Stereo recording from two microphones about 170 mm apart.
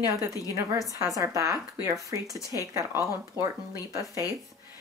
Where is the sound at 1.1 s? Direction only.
20° right (ahead or behind).